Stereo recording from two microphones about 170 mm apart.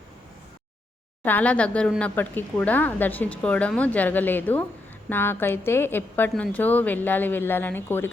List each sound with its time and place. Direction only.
1.2 s a woman's voice: 10° left (ahead or behind)